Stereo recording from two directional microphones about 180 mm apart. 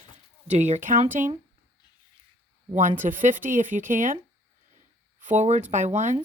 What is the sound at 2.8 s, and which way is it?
Speech, 45° right (ahead or behind).